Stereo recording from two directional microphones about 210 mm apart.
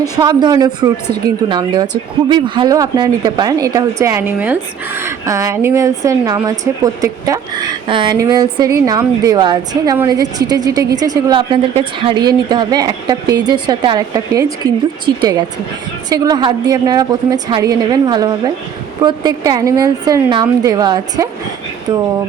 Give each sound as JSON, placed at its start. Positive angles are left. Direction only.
{"t": 0.0, "sound": "a woman's voice", "side_deg": -20}